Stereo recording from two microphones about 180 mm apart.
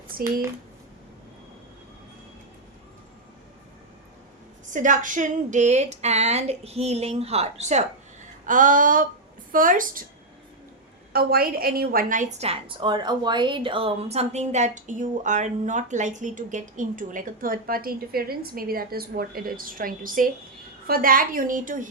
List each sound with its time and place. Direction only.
0.1 s speech: 55° right (ahead or behind)
4.7 s a woman's voice: 45° right (ahead or behind)
11.1 s a woman's voice: 60° right (ahead or behind)